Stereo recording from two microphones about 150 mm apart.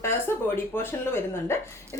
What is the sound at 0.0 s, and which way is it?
Speech, 15° left (ahead or behind).